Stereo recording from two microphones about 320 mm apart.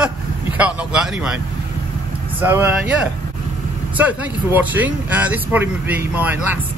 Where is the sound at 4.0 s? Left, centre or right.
Centre.